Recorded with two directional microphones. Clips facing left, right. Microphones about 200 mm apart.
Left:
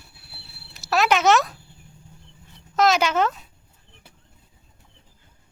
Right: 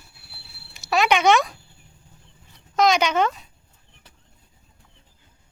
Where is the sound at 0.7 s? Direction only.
Centre (ahead or behind).